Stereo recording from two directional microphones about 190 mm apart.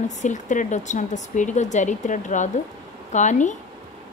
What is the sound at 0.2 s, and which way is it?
Speech, 40° left (ahead or behind).